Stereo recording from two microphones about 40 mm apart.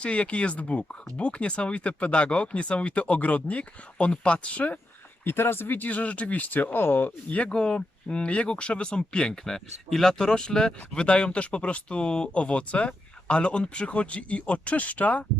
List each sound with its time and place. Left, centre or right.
0.0 s speech: left
5.2 s speech: left
6.5 s speech: left
7.3 s speech: left
7.5 s speech: left